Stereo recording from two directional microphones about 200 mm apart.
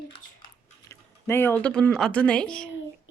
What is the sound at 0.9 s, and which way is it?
Speech, 15° left (ahead or behind).